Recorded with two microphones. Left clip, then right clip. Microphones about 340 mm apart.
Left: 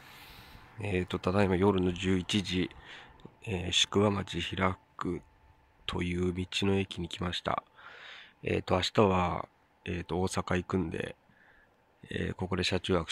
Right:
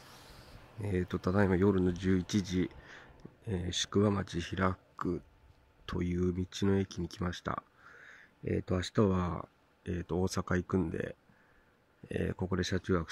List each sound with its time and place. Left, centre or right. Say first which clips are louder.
0.7 s speech: left 3 dB; centre
8.1 s a sound: left 4 dB; left
8.6 s speech: left 6 dB; centre